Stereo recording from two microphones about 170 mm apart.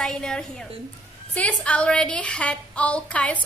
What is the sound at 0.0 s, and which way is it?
A woman's voice, 5° left (ahead or behind).